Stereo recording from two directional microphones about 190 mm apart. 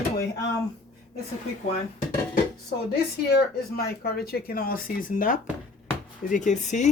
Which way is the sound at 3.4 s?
55° left (ahead or behind).